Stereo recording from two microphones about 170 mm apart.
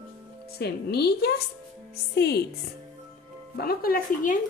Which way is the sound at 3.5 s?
60° left (ahead or behind).